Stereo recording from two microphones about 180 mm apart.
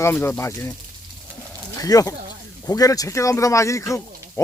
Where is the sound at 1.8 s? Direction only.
20° left (ahead or behind).